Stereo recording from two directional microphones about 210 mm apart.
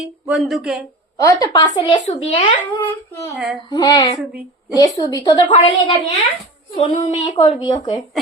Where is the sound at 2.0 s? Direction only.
30° left (ahead or behind).